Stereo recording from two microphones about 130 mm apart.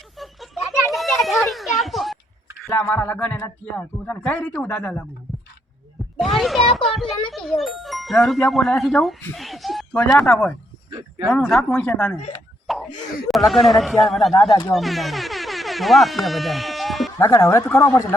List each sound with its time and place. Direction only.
0.2 s a sound: centre (ahead or behind)
1.2 s children playing: centre (ahead or behind)
2.7 s a man's voice: 15° left (ahead or behind)
6.1 s speech: centre (ahead or behind)
9.3 s a sound: centre (ahead or behind)
10.2 s a man's voice: 10° left (ahead or behind)
12.6 s plop: centre (ahead or behind)
12.9 s a sound: 70° left (ahead or behind)
13.2 s speech: centre (ahead or behind)
17.2 s speech: 25° left (ahead or behind)